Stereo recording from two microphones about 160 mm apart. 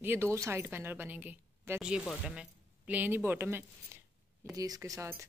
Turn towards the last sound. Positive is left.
turn(degrees=-15)  # may be behind; listen again after turning